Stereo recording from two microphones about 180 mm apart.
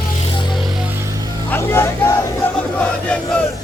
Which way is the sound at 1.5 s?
15° left (ahead or behind).